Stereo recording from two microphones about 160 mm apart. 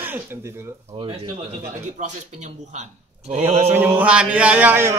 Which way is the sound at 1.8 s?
50° right (ahead or behind).